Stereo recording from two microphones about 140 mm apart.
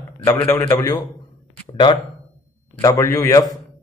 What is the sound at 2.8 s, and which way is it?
Speech, 25° left (ahead or behind).